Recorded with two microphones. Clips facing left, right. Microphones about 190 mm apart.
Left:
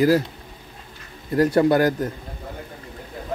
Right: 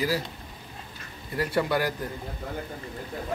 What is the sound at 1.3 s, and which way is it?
Speech, 45° left (ahead or behind).